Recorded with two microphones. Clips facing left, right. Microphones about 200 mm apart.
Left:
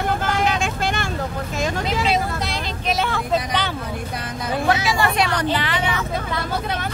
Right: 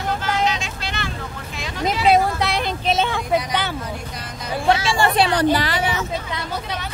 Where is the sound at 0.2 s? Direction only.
55° left (ahead or behind).